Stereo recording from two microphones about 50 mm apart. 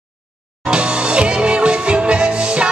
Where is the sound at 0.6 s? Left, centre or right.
Centre.